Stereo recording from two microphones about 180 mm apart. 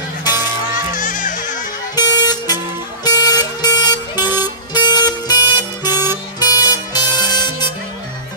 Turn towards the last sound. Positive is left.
turn(degrees=25)  # may be behind; listen again after turning